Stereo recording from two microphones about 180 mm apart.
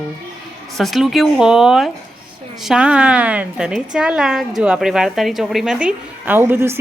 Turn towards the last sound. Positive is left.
turn(degrees=-15)  # may be behind; listen again after turning